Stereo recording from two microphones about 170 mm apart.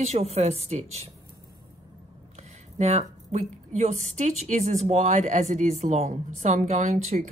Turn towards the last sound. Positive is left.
turn(degrees=-45)  # may be behind; listen again after turning